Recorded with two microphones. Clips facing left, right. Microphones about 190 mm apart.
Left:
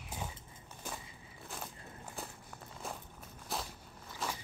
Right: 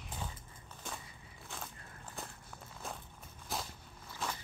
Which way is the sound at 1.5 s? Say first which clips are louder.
Left 2 dB; 5° left (ahead or behind).